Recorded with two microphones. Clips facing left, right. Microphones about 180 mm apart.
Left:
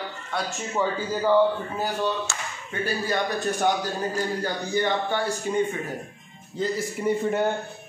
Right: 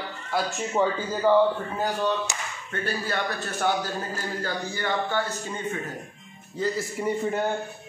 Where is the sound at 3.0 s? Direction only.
15° left (ahead or behind).